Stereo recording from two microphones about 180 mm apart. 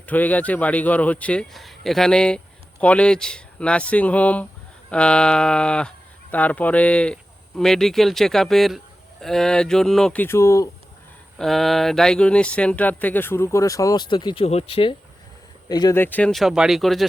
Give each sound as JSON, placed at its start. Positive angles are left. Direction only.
{"t": 0.0, "sound": "speech", "side_deg": 10}
{"t": 11.3, "sound": "speech", "side_deg": 0}
{"t": 16.0, "sound": "speech", "side_deg": 10}